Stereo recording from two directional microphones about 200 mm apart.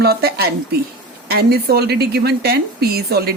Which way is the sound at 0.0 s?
50° right (ahead or behind).